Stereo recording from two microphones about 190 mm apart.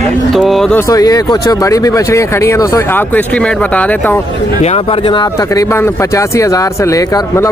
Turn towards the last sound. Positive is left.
turn(degrees=15)  # may be behind; listen again after turning